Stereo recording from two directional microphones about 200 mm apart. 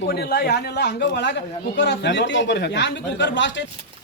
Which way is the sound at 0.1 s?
50° left (ahead or behind).